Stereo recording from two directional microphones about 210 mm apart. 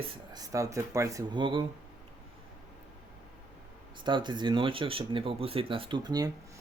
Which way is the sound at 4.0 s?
20° right (ahead or behind).